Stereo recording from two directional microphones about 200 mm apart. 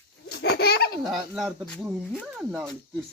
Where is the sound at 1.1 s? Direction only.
Centre (ahead or behind).